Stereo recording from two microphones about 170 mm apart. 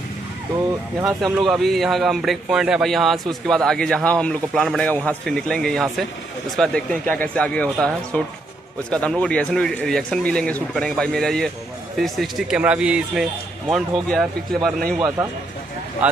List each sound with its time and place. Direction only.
1.2 s a man's voice: centre (ahead or behind)
15.0 s a man's voice: 20° right (ahead or behind)
16.0 s speech: 10° right (ahead or behind)